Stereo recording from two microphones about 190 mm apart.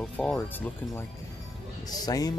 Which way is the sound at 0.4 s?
10° left (ahead or behind).